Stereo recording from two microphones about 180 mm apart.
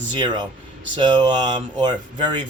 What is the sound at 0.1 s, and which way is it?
A man's voice, 25° right (ahead or behind).